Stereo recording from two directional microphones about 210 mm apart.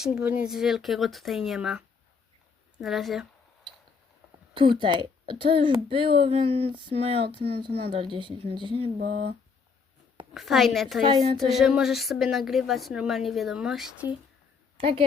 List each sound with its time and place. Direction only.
0.0 s a woman's voice: 5° right (ahead or behind)
4.5 s speech: 25° right (ahead or behind)
7.7 s a woman's voice: 50° right (ahead or behind)
8.1 s speech: 25° right (ahead or behind)
9.0 s speech: 35° right (ahead or behind)
10.3 s a woman's voice: centre (ahead or behind)
14.8 s a woman's voice: 25° right (ahead or behind)